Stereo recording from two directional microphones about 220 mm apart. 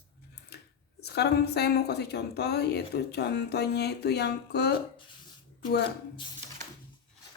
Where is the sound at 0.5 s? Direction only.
50° left (ahead or behind).